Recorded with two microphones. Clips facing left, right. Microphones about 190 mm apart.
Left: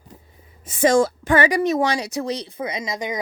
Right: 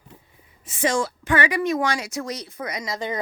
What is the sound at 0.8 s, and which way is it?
Speech, 50° left (ahead or behind).